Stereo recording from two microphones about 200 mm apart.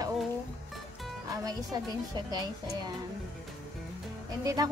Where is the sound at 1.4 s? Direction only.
20° right (ahead or behind).